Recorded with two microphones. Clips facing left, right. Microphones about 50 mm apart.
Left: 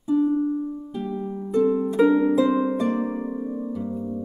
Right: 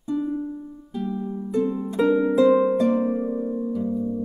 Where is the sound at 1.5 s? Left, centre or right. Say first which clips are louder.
Left 4 dB; centre.